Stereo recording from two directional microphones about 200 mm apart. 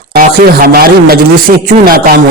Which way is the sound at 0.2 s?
45° right (ahead or behind).